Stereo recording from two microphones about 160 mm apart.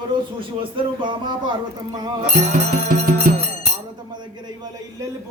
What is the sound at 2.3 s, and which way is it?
Music, 45° right (ahead or behind).